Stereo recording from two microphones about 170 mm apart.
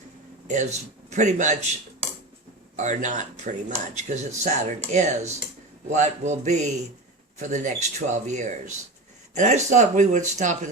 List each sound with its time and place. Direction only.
0.4 s a man's voice: 45° right (ahead or behind)
2.7 s speech: 45° right (ahead or behind)